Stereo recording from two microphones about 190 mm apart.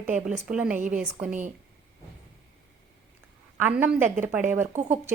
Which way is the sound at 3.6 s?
10° right (ahead or behind).